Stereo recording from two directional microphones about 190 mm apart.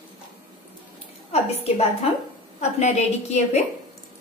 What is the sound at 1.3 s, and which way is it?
A woman's voice, 35° left (ahead or behind).